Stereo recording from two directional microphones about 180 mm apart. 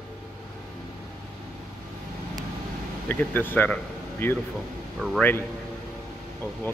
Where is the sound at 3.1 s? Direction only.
10° left (ahead or behind).